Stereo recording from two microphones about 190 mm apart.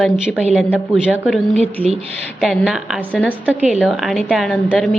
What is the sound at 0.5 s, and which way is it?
Speech, 5° right (ahead or behind).